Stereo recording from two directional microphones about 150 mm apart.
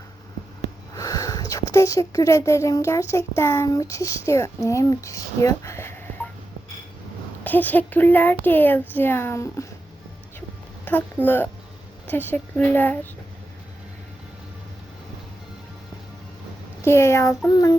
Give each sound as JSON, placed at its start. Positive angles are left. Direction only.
{"t": 0.9, "sound": "speech", "side_deg": 25}
{"t": 7.4, "sound": "a child's voice", "side_deg": 10}
{"t": 10.9, "sound": "speech", "side_deg": 10}
{"t": 12.0, "sound": "a child's voice", "side_deg": 15}
{"t": 16.8, "sound": "speech", "side_deg": 15}